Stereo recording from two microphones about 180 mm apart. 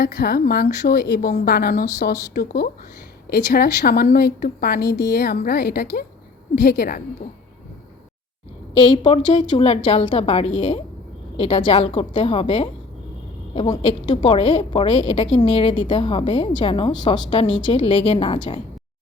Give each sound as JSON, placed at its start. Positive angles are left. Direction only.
{"t": 0.0, "sound": "a woman's voice", "side_deg": 60}
{"t": 8.7, "sound": "a woman's voice", "side_deg": 30}